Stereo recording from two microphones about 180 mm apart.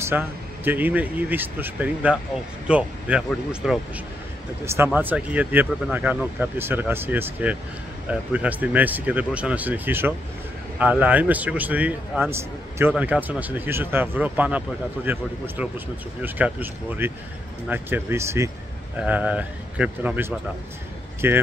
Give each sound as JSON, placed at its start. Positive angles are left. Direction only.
{"t": 0.0, "sound": "a man's voice", "side_deg": -10}